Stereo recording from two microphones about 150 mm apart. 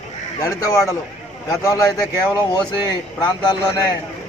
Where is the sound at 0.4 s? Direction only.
20° left (ahead or behind).